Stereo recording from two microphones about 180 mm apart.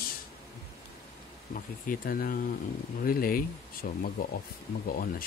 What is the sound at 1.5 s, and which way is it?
Speech, 50° left (ahead or behind).